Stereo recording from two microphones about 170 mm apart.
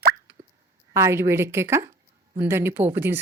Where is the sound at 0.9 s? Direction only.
15° right (ahead or behind).